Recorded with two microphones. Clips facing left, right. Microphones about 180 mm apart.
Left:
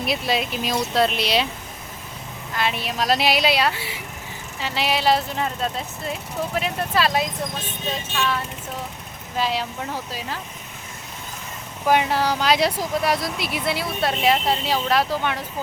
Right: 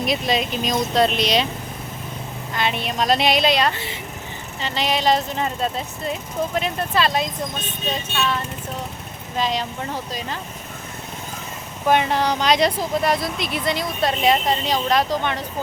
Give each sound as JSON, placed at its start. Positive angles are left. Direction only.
{"t": 0.0, "sound": "speech", "side_deg": 5}
{"t": 2.6, "sound": "speech", "side_deg": 5}
{"t": 11.9, "sound": "speech", "side_deg": 5}